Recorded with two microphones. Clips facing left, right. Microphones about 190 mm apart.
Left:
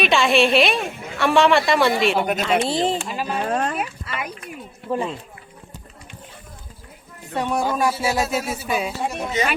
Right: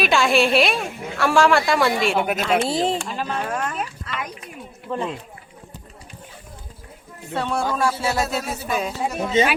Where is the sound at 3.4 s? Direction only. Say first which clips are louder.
Left 4 dB; 30° left (ahead or behind).